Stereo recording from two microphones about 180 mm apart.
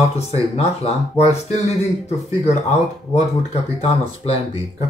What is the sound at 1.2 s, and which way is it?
Speech, 40° left (ahead or behind).